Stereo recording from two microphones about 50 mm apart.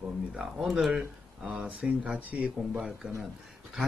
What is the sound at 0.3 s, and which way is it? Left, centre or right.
Speech, centre.